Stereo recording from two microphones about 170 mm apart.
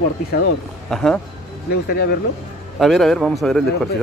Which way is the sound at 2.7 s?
Centre (ahead or behind).